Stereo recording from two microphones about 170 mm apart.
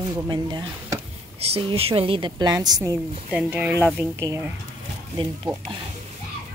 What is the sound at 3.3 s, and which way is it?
Speech, 10° right (ahead or behind).